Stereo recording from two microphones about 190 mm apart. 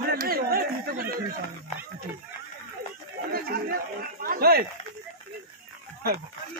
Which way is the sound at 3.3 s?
50° right (ahead or behind).